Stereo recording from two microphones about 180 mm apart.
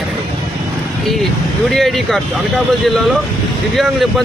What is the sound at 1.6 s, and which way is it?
Speech, centre (ahead or behind).